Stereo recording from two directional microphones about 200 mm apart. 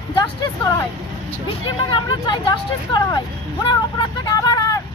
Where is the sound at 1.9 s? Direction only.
25° left (ahead or behind).